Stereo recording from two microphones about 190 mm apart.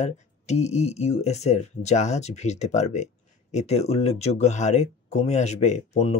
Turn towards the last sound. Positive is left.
turn(degrees=35)  # may be behind; listen again after turning